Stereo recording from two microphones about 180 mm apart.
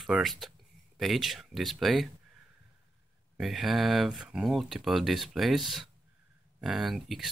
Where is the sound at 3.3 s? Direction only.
Centre (ahead or behind).